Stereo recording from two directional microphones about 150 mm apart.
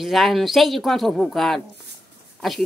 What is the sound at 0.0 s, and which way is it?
A woman's voice, centre (ahead or behind).